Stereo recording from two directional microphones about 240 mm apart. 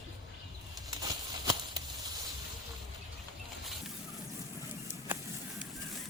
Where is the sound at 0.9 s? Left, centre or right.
Centre.